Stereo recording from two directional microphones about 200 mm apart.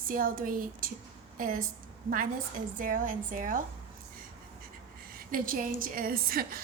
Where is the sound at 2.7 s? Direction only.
40° right (ahead or behind).